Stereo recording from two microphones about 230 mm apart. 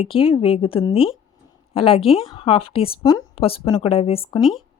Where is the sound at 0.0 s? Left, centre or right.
Left.